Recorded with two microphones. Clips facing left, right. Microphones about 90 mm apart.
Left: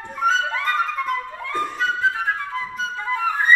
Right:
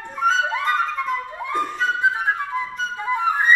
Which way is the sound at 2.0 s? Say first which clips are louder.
Right 1 dB; 20° right (ahead or behind).